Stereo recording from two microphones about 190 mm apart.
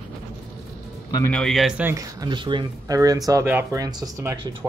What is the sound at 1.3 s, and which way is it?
Speech, centre (ahead or behind).